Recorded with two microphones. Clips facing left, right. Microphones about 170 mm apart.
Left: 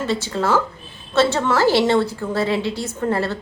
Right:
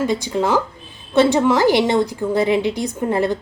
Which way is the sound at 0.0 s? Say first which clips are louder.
Right 3 dB; 15° right (ahead or behind).